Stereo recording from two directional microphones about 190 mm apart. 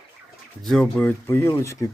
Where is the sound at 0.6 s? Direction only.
5° left (ahead or behind).